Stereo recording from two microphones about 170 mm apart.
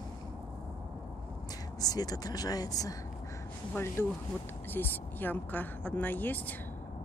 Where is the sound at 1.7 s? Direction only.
20° left (ahead or behind).